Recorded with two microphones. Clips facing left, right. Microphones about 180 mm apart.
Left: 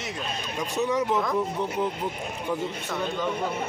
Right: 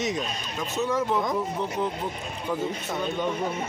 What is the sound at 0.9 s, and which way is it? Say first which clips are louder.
Speech: even; 15° left (ahead or behind).